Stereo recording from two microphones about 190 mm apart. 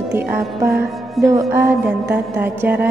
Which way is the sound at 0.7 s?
Centre (ahead or behind).